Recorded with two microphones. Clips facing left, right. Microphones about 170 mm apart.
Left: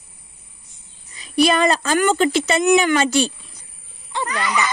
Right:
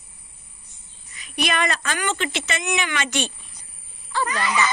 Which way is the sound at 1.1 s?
35° left (ahead or behind).